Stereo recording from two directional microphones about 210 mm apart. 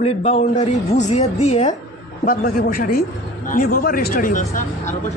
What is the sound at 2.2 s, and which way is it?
A man's voice, 45° left (ahead or behind).